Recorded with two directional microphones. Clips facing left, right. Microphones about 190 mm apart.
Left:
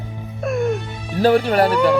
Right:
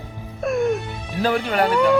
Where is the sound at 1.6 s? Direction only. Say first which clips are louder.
Left 1 dB; centre (ahead or behind).